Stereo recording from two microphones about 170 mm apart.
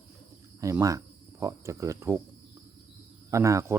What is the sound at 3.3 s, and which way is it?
Speech, 20° right (ahead or behind).